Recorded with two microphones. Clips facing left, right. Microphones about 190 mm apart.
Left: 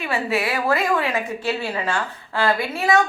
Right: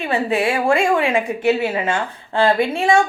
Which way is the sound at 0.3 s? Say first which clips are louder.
Right 4 dB; 25° right (ahead or behind).